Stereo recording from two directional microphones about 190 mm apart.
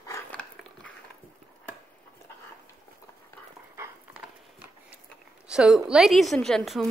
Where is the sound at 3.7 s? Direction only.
10° right (ahead or behind).